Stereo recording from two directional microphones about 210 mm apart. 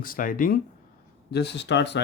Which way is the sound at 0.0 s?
40° left (ahead or behind).